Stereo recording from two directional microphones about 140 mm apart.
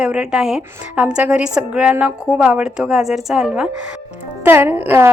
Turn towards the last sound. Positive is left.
turn(degrees=-15)  # may be behind; listen again after turning